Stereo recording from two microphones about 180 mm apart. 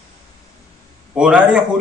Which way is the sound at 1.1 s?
5° right (ahead or behind).